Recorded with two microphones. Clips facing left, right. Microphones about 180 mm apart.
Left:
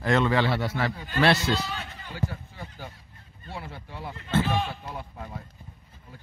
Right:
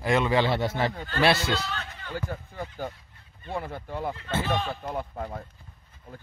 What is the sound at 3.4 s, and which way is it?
Speech, 50° right (ahead or behind).